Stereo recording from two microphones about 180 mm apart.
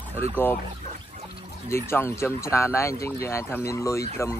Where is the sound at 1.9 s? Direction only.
15° left (ahead or behind).